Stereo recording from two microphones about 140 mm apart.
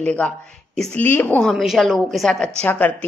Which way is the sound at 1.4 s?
Centre (ahead or behind).